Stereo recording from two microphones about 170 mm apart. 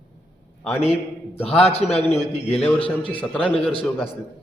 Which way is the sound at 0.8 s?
35° left (ahead or behind).